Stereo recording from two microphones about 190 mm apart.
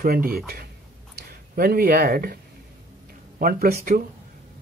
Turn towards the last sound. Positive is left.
turn(degrees=-50)  # may be behind; listen again after turning